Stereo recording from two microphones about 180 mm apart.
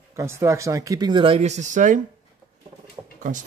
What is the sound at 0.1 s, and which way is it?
Speech, 15° right (ahead or behind).